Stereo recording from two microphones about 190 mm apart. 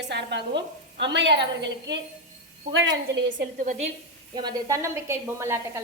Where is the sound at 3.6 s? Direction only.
40° right (ahead or behind).